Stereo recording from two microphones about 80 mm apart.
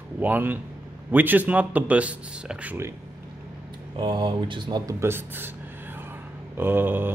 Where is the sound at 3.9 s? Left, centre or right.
Right.